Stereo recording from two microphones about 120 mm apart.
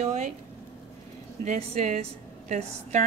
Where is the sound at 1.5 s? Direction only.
85° right.